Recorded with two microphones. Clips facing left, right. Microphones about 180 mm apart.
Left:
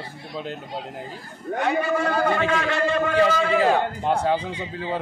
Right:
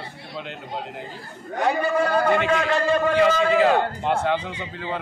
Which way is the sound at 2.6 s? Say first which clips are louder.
Right 2 dB; 35° right (ahead or behind).